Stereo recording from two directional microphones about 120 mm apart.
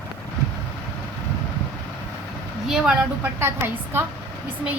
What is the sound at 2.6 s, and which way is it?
Speech, 5° right (ahead or behind).